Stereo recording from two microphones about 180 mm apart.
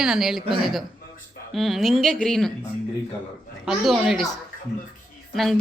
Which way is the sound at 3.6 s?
5° right (ahead or behind).